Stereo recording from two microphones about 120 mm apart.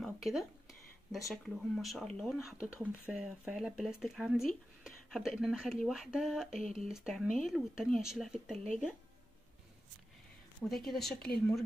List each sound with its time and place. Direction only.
0.0 s speech: centre (ahead or behind)
2.8 s speech: 10° right (ahead or behind)
10.6 s speech: centre (ahead or behind)